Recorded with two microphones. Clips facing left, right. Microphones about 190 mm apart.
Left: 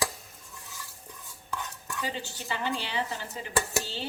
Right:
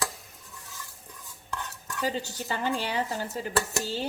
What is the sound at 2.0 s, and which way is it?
A woman's voice, 40° right (ahead or behind).